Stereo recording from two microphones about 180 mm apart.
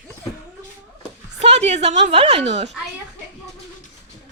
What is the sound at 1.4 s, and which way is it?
A woman's voice, 35° right (ahead or behind).